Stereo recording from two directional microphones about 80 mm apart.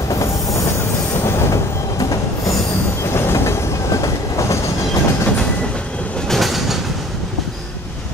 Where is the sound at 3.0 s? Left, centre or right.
Left.